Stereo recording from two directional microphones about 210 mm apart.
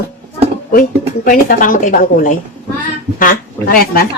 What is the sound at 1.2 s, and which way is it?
A woman's voice, 40° left (ahead or behind).